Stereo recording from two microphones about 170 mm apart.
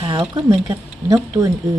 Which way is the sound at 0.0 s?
30° right (ahead or behind).